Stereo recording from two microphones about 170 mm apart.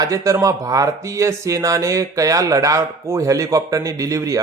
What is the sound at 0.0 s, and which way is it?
A man's voice, 20° right (ahead or behind).